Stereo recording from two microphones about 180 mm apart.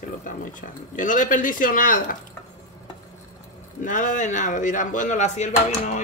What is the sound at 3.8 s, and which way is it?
Speech, 45° left (ahead or behind).